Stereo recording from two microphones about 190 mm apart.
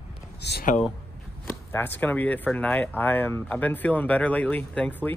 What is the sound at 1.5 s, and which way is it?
Speech, 10° left (ahead or behind).